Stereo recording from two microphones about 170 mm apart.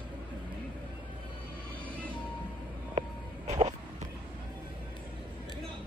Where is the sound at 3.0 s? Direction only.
35° right (ahead or behind).